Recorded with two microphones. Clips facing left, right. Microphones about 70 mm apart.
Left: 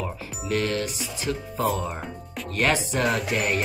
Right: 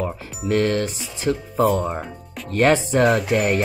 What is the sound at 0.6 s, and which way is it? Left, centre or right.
Speech, right.